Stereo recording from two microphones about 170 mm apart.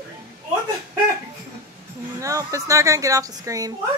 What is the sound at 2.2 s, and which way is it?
Speech, 20° right (ahead or behind).